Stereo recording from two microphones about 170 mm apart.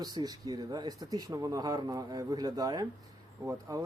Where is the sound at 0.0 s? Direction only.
20° right (ahead or behind).